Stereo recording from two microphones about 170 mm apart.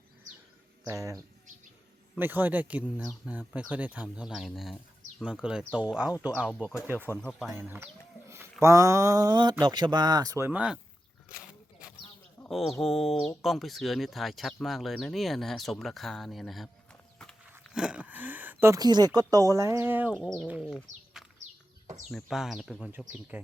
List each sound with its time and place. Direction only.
0.9 s speech: 20° right (ahead or behind); by 7.5 s centre (ahead or behind)
8.6 s speech: 20° right (ahead or behind)
12.5 s speech: centre (ahead or behind)
22.1 s speech: centre (ahead or behind)